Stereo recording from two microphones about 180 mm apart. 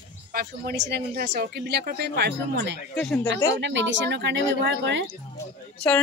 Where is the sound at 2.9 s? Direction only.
10° left (ahead or behind).